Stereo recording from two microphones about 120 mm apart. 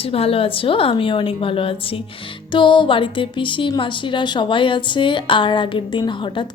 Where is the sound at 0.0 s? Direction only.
50° left (ahead or behind).